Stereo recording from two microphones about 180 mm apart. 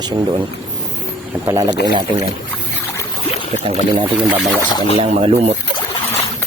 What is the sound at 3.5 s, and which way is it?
Speech, 35° right (ahead or behind).